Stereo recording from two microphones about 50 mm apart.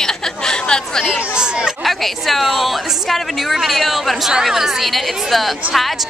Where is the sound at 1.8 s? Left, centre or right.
Centre.